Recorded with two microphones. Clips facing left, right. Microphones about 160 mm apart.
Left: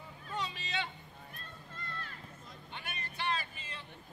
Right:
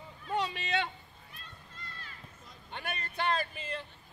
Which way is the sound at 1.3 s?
55° left (ahead or behind).